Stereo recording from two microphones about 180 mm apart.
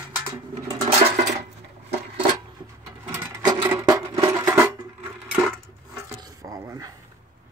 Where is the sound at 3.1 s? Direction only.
15° right (ahead or behind).